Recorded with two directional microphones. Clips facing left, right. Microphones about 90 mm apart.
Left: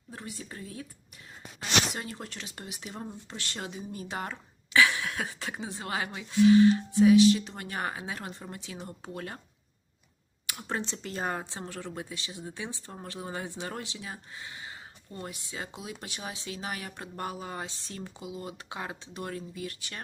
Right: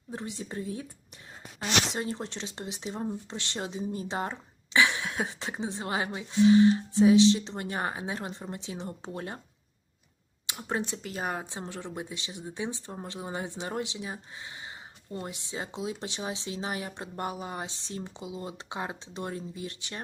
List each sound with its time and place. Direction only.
0.1 s speech: 20° right (ahead or behind)
1.9 s speech: 25° right (ahead or behind)
10.4 s speech: 20° right (ahead or behind)